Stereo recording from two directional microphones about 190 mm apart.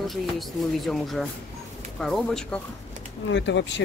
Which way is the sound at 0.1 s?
Centre (ahead or behind).